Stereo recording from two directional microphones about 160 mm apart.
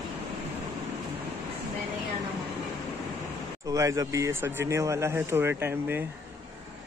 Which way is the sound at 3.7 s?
20° right (ahead or behind).